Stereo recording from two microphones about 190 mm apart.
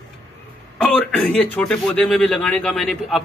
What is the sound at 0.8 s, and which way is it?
Speech, 5° left (ahead or behind).